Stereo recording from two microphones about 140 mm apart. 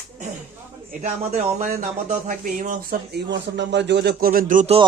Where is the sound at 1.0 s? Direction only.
55° right (ahead or behind); by 2.9 s 70° right (ahead or behind).